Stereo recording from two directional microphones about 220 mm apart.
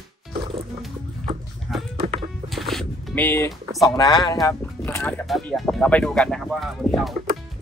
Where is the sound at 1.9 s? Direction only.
25° right (ahead or behind).